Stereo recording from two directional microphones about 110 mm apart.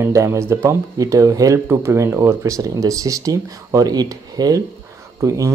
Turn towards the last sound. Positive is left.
turn(degrees=-25)  # may be behind; listen again after turning